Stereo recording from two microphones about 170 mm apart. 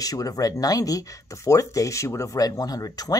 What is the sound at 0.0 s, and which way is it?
A woman's voice, 20° left (ahead or behind).